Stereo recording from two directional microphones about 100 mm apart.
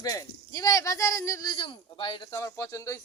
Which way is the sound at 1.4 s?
55° left (ahead or behind).